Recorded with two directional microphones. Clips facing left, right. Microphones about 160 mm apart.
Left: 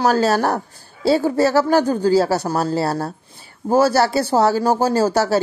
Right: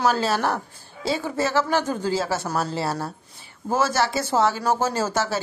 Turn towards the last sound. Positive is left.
turn(degrees=35)  # may be behind; listen again after turning